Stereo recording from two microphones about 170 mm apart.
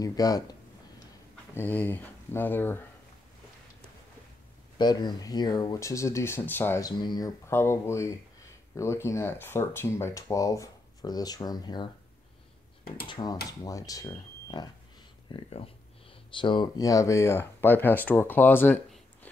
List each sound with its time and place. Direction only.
0.0 s a sound: 20° left (ahead or behind)
1.5 s speech: 10° left (ahead or behind)
4.7 s speech: 25° left (ahead or behind)
7.0 s speech: 25° left (ahead or behind)
13.1 s speech: 25° left (ahead or behind)